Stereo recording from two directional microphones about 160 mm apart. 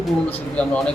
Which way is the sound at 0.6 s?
10° left (ahead or behind).